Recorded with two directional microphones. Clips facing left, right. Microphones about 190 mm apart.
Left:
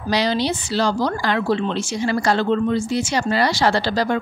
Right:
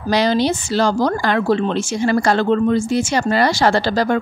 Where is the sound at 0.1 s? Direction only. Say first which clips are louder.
Right 4 dB; 50° right (ahead or behind).